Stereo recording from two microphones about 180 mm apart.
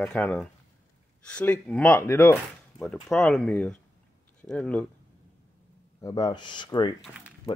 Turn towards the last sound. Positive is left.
turn(degrees=25)  # may be behind; listen again after turning